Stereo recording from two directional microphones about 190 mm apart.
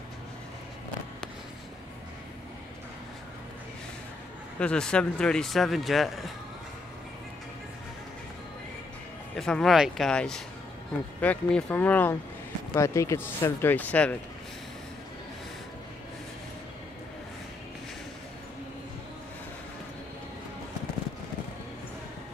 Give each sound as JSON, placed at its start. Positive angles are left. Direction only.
{"t": 4.6, "sound": "speech", "side_deg": 5}
{"t": 9.3, "sound": "speech", "side_deg": 5}